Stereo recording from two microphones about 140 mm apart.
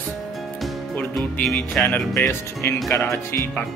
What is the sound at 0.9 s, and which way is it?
Speech, 5° left (ahead or behind).